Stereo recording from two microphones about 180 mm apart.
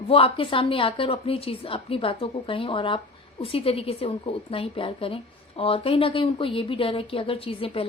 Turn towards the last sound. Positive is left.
turn(degrees=30)  # may be behind; listen again after turning